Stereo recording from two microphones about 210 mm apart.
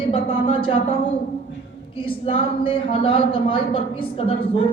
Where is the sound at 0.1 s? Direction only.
25° left (ahead or behind).